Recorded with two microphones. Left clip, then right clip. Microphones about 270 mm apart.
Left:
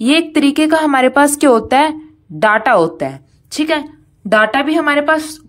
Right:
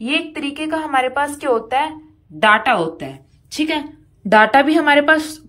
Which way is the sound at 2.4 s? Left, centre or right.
Centre.